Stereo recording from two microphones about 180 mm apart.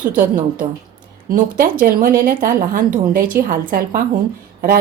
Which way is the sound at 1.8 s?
50° right (ahead or behind).